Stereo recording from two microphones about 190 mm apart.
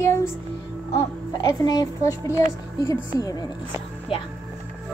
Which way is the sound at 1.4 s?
20° left (ahead or behind).